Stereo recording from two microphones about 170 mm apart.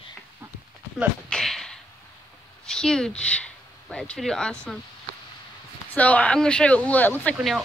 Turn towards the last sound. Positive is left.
turn(degrees=10)  # may be behind; listen again after turning